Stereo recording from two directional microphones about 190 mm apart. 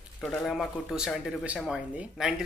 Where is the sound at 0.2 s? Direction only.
Centre (ahead or behind).